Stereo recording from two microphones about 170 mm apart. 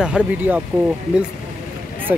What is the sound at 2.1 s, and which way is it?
Speech, 10° right (ahead or behind).